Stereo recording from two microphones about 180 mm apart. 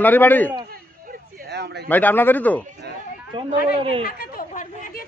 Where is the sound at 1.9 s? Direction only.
10° left (ahead or behind).